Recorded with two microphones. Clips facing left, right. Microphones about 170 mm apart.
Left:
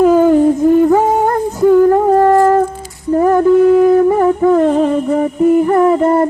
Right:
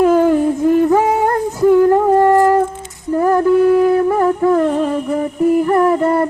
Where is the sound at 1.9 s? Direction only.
15° left (ahead or behind).